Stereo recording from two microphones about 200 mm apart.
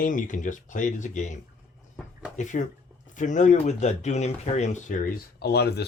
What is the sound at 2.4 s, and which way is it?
Speech, 40° left (ahead or behind).